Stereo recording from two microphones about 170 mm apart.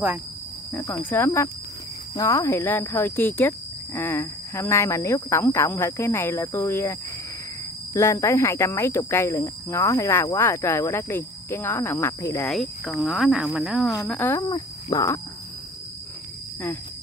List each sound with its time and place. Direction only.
0.7 s speech: 15° left (ahead or behind)
12.4 s speech: centre (ahead or behind)
14.0 s speech: 10° left (ahead or behind)